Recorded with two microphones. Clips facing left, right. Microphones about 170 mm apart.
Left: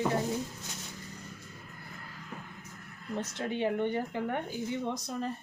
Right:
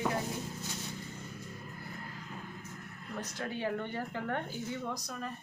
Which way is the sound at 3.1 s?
20° left (ahead or behind).